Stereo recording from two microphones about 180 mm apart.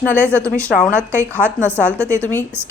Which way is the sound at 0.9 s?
10° right (ahead or behind).